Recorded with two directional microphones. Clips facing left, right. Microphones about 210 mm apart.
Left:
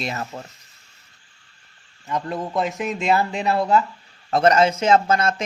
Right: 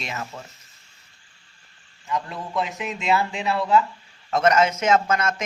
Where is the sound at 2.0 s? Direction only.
40° left (ahead or behind).